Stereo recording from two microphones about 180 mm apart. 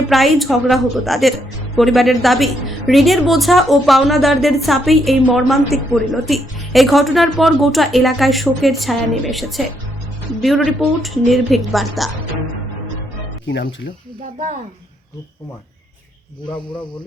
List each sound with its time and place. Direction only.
0.1 s a woman's voice: centre (ahead or behind)
13.4 s speech: 90° left
16.5 s speech: 25° left (ahead or behind)